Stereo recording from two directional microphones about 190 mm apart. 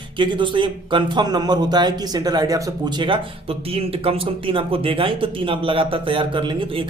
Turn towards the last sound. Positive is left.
turn(degrees=-25)  # may be behind; listen again after turning